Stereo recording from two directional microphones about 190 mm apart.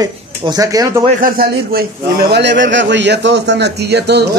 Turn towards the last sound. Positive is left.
turn(degrees=-60)  # may be behind; listen again after turning